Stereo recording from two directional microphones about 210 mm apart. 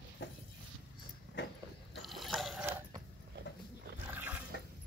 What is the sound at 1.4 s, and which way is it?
Mechanisms, 60° left (ahead or behind).